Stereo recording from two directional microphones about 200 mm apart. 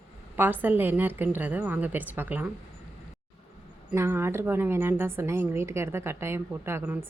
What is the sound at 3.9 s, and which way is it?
A woman's voice, 15° right (ahead or behind).